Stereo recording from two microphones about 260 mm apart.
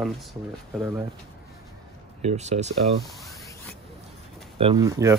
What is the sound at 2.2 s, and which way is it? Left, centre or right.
Speech, right.